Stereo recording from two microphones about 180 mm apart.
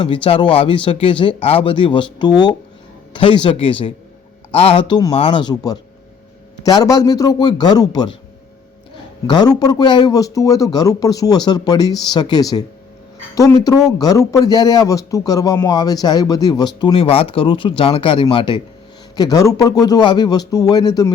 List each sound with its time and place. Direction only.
0.0 s speech: 30° left (ahead or behind)
9.2 s speech: 25° left (ahead or behind)